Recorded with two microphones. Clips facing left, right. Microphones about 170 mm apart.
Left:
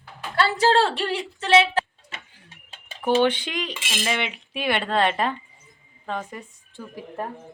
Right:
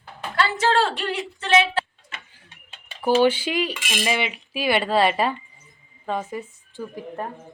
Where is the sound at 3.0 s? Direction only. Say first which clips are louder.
Right 2 dB; 5° right (ahead or behind).